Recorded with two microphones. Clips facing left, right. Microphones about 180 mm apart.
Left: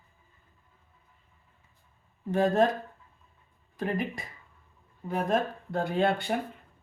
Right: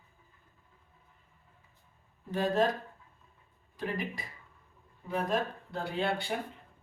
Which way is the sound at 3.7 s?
50° left (ahead or behind).